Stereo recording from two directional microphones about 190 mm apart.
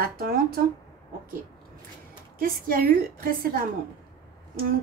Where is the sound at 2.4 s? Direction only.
50° right (ahead or behind).